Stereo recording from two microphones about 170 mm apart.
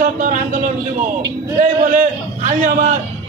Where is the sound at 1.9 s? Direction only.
55° right (ahead or behind).